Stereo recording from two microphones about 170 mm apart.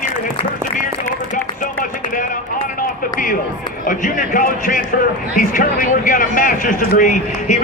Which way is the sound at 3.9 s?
50° left (ahead or behind).